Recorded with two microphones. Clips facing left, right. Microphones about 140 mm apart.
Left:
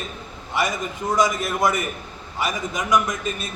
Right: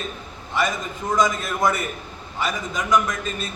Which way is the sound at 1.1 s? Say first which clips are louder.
Even; 10° left (ahead or behind).